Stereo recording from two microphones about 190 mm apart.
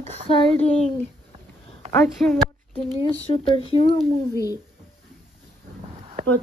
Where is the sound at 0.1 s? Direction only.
30° left (ahead or behind).